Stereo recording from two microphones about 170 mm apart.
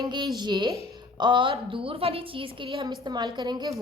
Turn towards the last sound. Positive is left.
turn(degrees=-25)  # may be behind; listen again after turning